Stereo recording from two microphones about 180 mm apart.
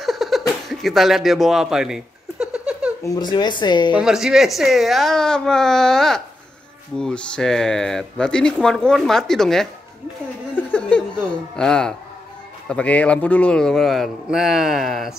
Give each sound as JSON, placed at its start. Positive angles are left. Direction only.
{"t": 0.0, "sound": "a sound", "side_deg": 0}
{"t": 3.2, "sound": "speech", "side_deg": 25}
{"t": 3.9, "sound": "speech", "side_deg": -5}
{"t": 10.5, "sound": "music", "side_deg": 5}
{"t": 12.6, "sound": "speech", "side_deg": 5}